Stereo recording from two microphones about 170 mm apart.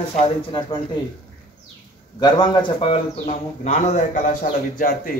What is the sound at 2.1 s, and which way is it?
A man's voice, 25° left (ahead or behind).